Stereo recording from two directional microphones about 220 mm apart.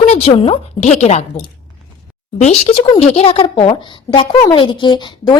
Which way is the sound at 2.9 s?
25° left (ahead or behind).